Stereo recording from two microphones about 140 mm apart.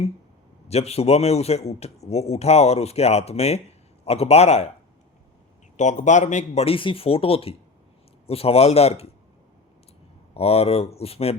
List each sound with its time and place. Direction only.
0.7 s speech: 50° left (ahead or behind)
5.7 s speech: 55° left (ahead or behind)
10.3 s speech: 45° left (ahead or behind)